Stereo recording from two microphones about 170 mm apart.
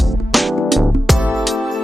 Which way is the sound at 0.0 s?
Centre (ahead or behind).